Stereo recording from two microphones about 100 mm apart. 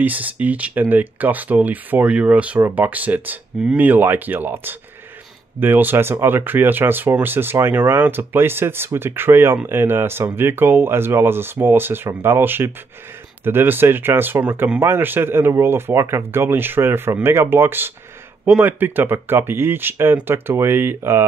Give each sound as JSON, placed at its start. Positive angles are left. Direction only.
{"t": 0.0, "sound": "speech", "side_deg": -15}